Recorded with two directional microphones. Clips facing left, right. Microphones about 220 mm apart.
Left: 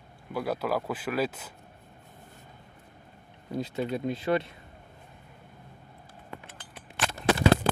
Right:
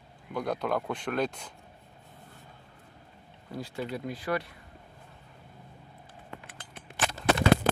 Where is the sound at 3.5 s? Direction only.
20° left (ahead or behind).